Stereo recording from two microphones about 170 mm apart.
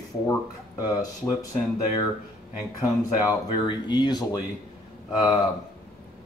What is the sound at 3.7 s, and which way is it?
Speech, 25° left (ahead or behind).